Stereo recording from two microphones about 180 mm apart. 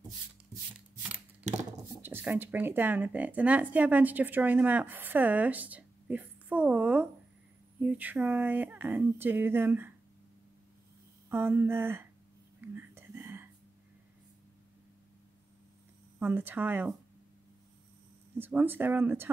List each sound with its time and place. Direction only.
1.5 s a sound: 40° right (ahead or behind)
2.0 s a woman's voice: 10° right (ahead or behind)
11.2 s speech: 10° right (ahead or behind)
12.5 s whispering: 10° right (ahead or behind)
16.2 s speech: 10° right (ahead or behind)
18.4 s speech: 10° right (ahead or behind)